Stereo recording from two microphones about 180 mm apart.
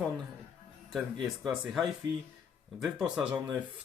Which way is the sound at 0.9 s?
Centre (ahead or behind).